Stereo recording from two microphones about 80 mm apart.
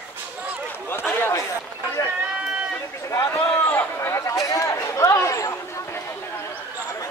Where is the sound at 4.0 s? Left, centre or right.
Left.